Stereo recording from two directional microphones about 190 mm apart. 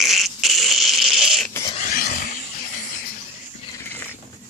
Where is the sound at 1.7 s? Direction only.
45° left (ahead or behind).